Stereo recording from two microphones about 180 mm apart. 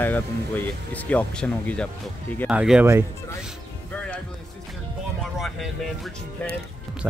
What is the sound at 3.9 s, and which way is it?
Music, 10° left (ahead or behind).